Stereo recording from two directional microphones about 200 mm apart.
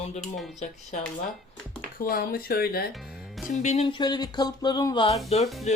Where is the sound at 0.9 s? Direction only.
40° left (ahead or behind).